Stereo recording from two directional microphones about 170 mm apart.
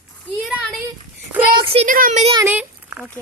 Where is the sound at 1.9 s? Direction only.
55° right (ahead or behind).